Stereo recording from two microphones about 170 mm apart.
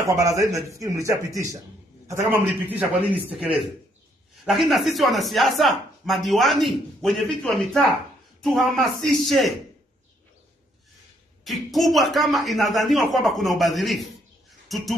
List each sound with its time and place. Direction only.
0.0 s a man's voice: 20° right (ahead or behind); by 9.6 s centre (ahead or behind)
11.4 s speech: centre (ahead or behind)